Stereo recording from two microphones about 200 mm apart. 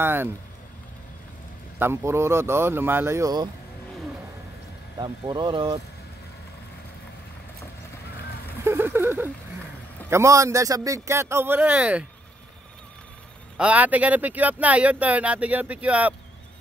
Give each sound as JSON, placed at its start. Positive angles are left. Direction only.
{"t": 0.0, "sound": "speech", "side_deg": -10}
{"t": 1.8, "sound": "speech", "side_deg": -10}
{"t": 4.9, "sound": "speech", "side_deg": -20}
{"t": 8.6, "sound": "a sound", "side_deg": -10}
{"t": 10.0, "sound": "speech", "side_deg": -15}
{"t": 13.6, "sound": "speech", "side_deg": -5}